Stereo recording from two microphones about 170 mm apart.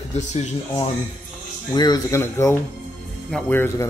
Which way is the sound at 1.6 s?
25° left (ahead or behind).